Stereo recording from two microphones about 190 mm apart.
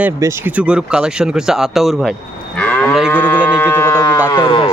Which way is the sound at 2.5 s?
5° left (ahead or behind).